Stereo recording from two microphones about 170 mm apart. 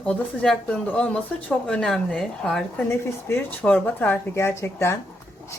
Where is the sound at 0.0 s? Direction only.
5° left (ahead or behind).